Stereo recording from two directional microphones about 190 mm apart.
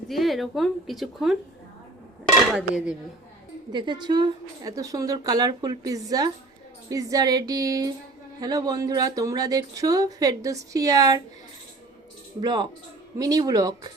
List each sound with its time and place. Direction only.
0.1 s speech: centre (ahead or behind)
2.5 s speech: 5° right (ahead or behind)
3.7 s speech: 25° right (ahead or behind)
12.4 s speech: 25° right (ahead or behind)